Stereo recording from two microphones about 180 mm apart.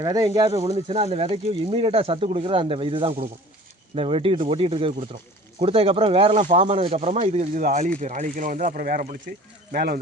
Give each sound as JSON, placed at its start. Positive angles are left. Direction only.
{"t": 0.0, "sound": "speech", "side_deg": -20}